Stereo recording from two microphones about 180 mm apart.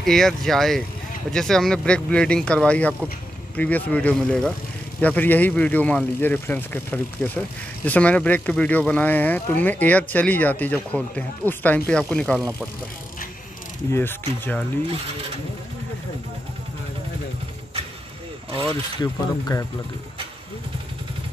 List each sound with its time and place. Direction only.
0.0 s speech: centre (ahead or behind)
13.9 s speech: 10° left (ahead or behind)
18.9 s speech: 20° left (ahead or behind)